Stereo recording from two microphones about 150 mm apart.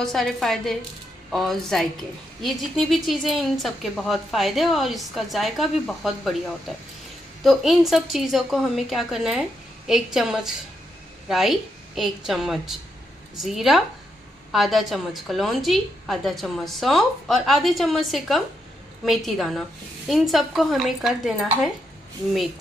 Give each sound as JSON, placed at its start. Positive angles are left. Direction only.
{"t": 0.0, "sound": "a woman's voice", "side_deg": 0}
{"t": 7.4, "sound": "a woman's voice", "side_deg": 0}